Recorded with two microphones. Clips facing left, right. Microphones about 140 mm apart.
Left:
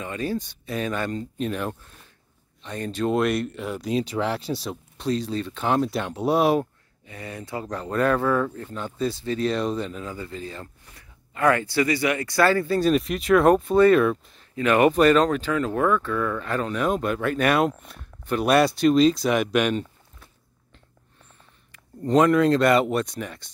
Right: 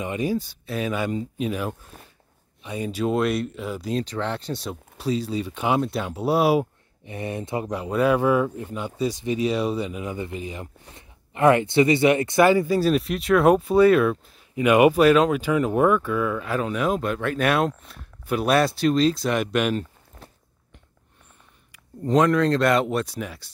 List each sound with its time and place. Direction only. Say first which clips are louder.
0.0 s speech: right 3 dB; 15° right (ahead or behind)
0.4 s speech: right 1 dB; 5° right (ahead or behind)
7.1 s speech: right 6 dB; 25° right (ahead or behind); by 19.9 s centre (ahead or behind)
21.7 s speech: left 1 dB; centre (ahead or behind)